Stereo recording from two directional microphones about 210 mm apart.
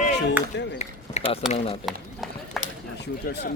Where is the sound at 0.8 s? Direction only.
30° left (ahead or behind).